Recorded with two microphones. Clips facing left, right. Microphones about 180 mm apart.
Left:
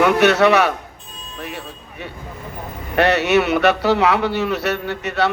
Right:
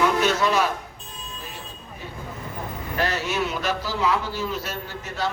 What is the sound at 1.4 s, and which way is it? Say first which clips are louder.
Music: left 8 dB; 70° left (ahead or behind).